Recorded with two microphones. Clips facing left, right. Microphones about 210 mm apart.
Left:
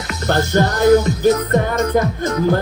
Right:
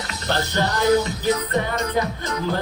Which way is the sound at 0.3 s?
45° left (ahead or behind).